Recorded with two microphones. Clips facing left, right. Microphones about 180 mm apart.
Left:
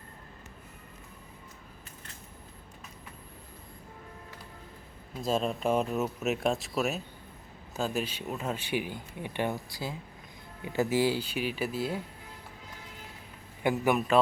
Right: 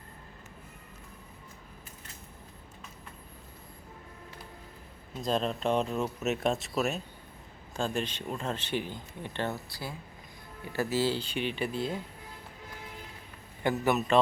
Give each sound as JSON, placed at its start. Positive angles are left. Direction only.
{"t": 5.1, "sound": "speech", "side_deg": 5}
{"t": 13.6, "sound": "speech", "side_deg": 10}